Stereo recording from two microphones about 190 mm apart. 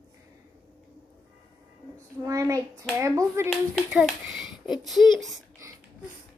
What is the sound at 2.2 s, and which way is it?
A child's voice, 15° right (ahead or behind).